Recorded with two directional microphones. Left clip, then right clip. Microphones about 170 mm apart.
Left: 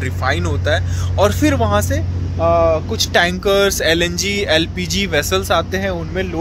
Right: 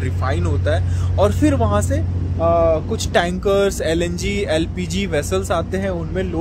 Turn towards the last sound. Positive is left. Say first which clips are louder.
# left 2 dB
turn(degrees=-10)  # may be behind; listen again after turning